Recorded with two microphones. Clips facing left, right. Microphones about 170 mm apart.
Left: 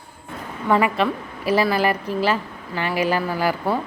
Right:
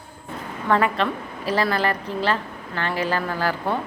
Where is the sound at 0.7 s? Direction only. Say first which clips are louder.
Left 2 dB; 10° left (ahead or behind).